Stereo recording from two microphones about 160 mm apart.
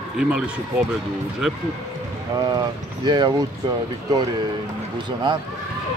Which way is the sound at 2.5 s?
30° right (ahead or behind).